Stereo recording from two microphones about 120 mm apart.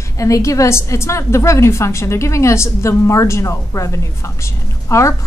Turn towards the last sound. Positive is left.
turn(degrees=25)  # may be behind; listen again after turning